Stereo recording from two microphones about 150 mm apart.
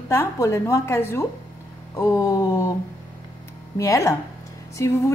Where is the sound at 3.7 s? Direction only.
20° left (ahead or behind).